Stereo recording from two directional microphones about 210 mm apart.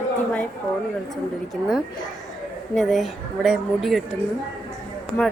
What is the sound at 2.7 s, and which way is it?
A woman's voice, centre (ahead or behind).